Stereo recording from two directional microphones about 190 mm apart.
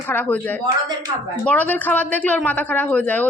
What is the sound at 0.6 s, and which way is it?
Speech, 20° right (ahead or behind).